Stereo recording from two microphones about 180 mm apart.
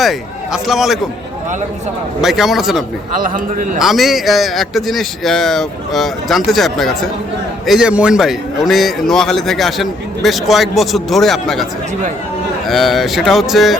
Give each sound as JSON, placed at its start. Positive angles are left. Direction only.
{"t": 0.0, "sound": "a man's voice", "side_deg": 0}
{"t": 2.2, "sound": "a man's voice", "side_deg": 0}
{"t": 3.2, "sound": "a man's voice", "side_deg": -50}
{"t": 3.8, "sound": "a man's voice", "side_deg": 0}
{"t": 12.6, "sound": "a man's voice", "side_deg": 0}